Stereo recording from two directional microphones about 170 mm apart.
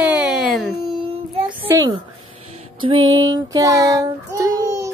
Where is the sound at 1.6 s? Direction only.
15° right (ahead or behind).